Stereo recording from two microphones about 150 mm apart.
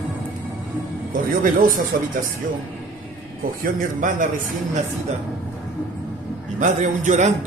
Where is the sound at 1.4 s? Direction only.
65° right (ahead or behind).